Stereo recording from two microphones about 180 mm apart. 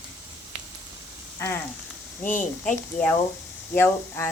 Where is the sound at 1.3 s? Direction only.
15° left (ahead or behind).